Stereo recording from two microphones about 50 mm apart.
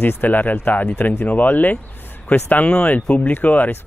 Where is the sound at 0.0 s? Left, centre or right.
Left.